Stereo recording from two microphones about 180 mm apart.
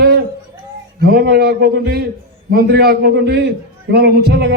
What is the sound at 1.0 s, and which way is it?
Speech, 65° right (ahead or behind).